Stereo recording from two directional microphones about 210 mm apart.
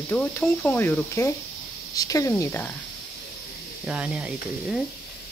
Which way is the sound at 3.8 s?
5° right (ahead or behind).